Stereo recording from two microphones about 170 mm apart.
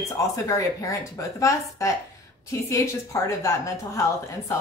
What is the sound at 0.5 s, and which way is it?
A woman's voice, 20° left (ahead or behind).